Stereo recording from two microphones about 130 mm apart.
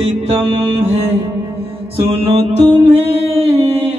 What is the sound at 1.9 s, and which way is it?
Music, 50° right (ahead or behind).